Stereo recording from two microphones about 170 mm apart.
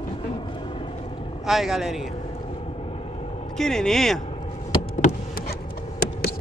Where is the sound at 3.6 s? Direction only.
5° left (ahead or behind).